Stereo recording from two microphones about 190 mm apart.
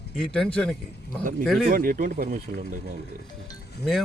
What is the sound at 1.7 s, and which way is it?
Speech, 50° right (ahead or behind).